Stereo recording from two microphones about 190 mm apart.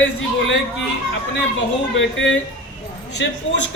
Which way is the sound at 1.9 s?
75° left (ahead or behind).